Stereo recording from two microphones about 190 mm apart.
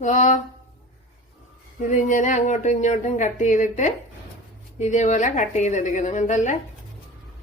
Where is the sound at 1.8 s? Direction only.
40° left (ahead or behind).